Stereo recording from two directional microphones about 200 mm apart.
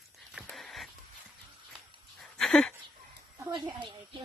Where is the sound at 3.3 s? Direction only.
25° right (ahead or behind).